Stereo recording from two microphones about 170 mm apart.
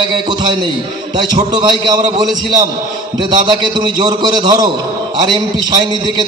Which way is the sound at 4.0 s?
25° right (ahead or behind).